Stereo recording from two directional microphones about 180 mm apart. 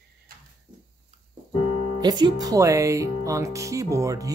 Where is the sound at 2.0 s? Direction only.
25° right (ahead or behind).